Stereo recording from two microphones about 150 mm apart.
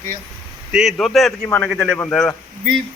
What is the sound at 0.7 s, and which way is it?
A man's voice, 5° right (ahead or behind).